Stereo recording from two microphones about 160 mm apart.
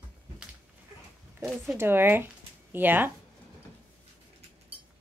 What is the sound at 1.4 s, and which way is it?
Speech, centre (ahead or behind).